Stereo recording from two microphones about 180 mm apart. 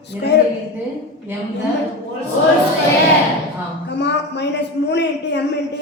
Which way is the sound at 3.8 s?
70° left (ahead or behind).